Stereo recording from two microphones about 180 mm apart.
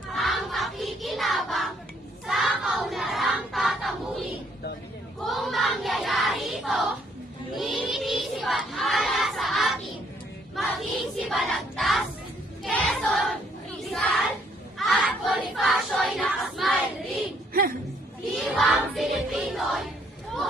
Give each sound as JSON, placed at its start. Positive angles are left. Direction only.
{"t": 0.1, "sound": "child singing", "side_deg": 0}
{"t": 2.2, "sound": "crowd", "side_deg": 0}
{"t": 5.2, "sound": "child singing", "side_deg": 0}
{"t": 7.5, "sound": "crowd", "side_deg": 0}
{"t": 10.5, "sound": "child singing", "side_deg": 0}
{"t": 12.6, "sound": "choir", "side_deg": 5}
{"t": 14.8, "sound": "child singing", "side_deg": 0}
{"t": 17.5, "sound": "a sound", "side_deg": -55}
{"t": 18.3, "sound": "music", "side_deg": 0}